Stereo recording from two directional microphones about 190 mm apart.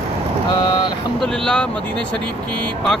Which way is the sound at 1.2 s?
5° left (ahead or behind).